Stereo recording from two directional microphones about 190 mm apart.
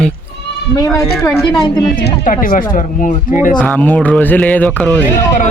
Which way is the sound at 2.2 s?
45° left (ahead or behind).